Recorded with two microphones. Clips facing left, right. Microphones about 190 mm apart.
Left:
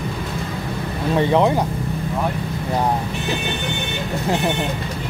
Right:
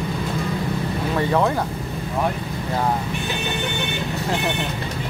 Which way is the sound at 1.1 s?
20° left (ahead or behind).